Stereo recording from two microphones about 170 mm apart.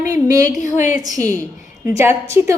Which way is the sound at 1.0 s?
20° right (ahead or behind).